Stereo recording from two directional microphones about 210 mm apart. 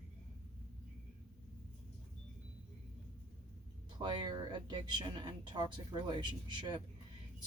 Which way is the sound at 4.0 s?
20° right (ahead or behind).